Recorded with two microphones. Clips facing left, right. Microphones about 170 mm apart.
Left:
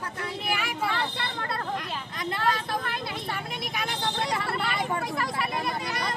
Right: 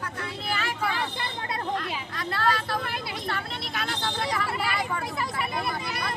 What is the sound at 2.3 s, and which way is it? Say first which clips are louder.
Speech: right 1 dB; 15° left (ahead or behind).